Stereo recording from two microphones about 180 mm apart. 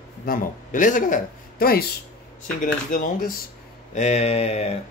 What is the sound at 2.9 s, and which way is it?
Speech, 50° left (ahead or behind).